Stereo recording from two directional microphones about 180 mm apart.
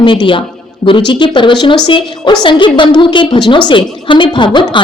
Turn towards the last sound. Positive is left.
turn(degrees=25)  # may be behind; listen again after turning